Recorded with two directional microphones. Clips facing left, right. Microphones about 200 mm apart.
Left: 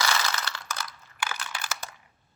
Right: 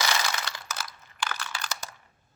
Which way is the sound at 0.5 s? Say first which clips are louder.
Left 1 dB; 5° right (ahead or behind).